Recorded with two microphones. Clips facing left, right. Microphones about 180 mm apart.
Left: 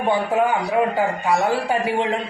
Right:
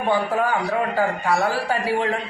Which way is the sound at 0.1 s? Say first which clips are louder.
Left 2 dB; 20° left (ahead or behind).